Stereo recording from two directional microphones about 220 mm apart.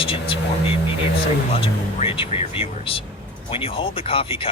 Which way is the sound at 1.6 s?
25° left (ahead or behind).